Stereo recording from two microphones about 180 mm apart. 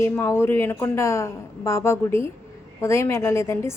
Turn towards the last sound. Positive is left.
turn(degrees=15)  # may be behind; listen again after turning